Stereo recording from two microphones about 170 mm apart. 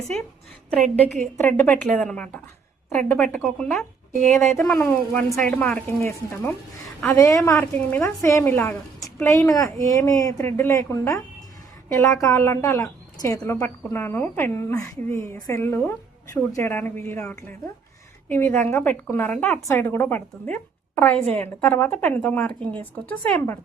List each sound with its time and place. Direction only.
0.7 s a woman's voice: 5° left (ahead or behind)
4.3 s a woman's voice: 15° left (ahead or behind)